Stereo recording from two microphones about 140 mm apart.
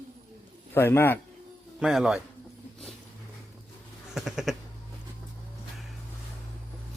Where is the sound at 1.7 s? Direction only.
5° right (ahead or behind).